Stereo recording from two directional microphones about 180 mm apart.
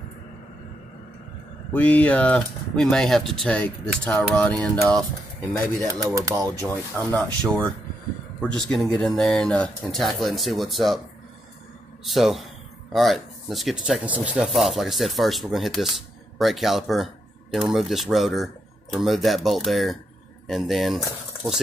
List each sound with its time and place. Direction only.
1.7 s speech: 10° left (ahead or behind)
4.4 s a sound: 5° left (ahead or behind)
5.9 s speech: 20° right (ahead or behind)
7.2 s speech: 5° left (ahead or behind)
12.0 s speech: centre (ahead or behind)